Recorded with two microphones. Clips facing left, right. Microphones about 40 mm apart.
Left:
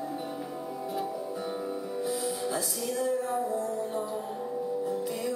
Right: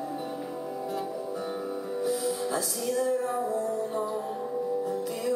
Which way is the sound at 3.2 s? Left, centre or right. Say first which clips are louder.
Right 1 dB; centre.